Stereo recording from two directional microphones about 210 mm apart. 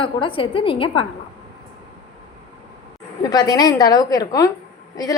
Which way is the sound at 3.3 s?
20° left (ahead or behind).